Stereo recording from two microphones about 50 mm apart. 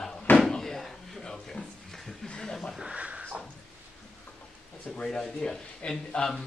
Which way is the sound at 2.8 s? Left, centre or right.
Right.